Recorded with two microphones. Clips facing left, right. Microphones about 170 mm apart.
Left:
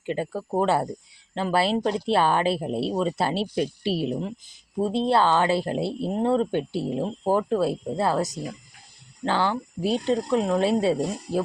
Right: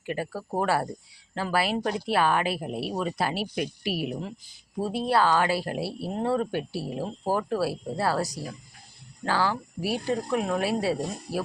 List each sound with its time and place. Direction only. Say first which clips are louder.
0.0 s speech: left 4 dB; 25° left (ahead or behind)